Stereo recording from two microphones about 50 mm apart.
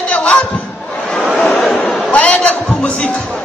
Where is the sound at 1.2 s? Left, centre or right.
Centre.